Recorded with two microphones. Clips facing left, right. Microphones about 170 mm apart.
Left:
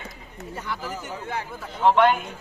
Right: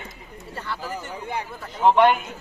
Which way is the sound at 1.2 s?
15° right (ahead or behind).